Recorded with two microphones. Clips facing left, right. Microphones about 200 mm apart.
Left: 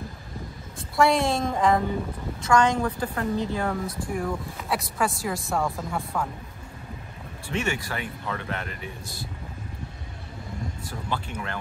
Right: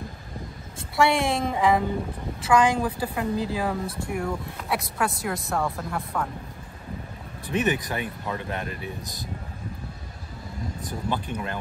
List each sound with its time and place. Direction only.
0.7 s speech: centre (ahead or behind)
3.8 s speech: 30° right (ahead or behind)
4.1 s speech: centre (ahead or behind)
7.4 s speech: 15° right (ahead or behind)
10.9 s speech: 15° right (ahead or behind)